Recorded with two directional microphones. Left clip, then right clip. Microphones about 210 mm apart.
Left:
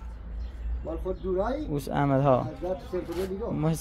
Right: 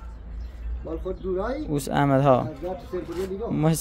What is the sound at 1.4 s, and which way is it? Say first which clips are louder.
Speech: left 1 dB; centre (ahead or behind).